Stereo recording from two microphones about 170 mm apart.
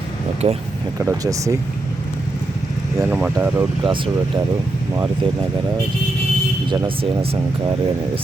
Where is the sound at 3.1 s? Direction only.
10° right (ahead or behind).